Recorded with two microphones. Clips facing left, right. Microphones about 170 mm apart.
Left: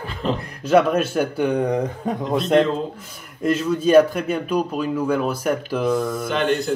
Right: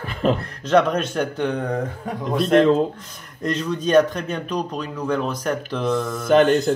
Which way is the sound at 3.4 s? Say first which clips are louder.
Left 4 dB; 5° left (ahead or behind).